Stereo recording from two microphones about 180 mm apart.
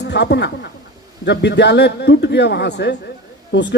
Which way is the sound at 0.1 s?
70° left (ahead or behind).